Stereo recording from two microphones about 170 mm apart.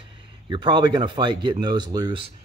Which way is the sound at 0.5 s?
30° right (ahead or behind).